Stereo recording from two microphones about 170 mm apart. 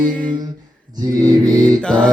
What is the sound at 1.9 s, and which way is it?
Music, 5° left (ahead or behind).